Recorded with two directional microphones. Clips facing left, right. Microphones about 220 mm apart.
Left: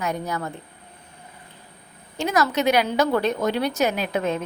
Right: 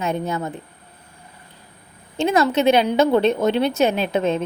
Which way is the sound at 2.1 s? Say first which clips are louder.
Right 4 dB; 25° right (ahead or behind).